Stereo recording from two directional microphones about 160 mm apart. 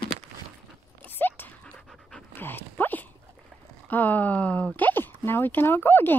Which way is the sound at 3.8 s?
10° left (ahead or behind).